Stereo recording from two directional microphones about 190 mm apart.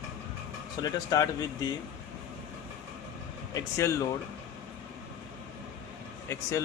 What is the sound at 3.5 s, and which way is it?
Speech, 15° left (ahead or behind).